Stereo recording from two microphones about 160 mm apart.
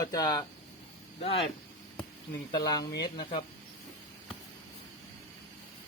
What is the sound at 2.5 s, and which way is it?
Speech, 25° left (ahead or behind).